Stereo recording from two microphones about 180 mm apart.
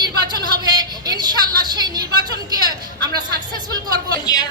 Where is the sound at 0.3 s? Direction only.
25° right (ahead or behind).